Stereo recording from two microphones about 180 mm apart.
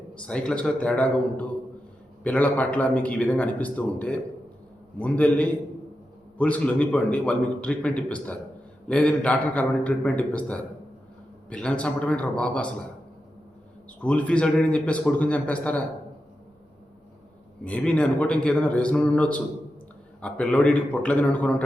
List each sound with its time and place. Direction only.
0.1 s a man's voice: 5° left (ahead or behind)
14.0 s a man's voice: 5° left (ahead or behind)
17.6 s a man's voice: 5° left (ahead or behind)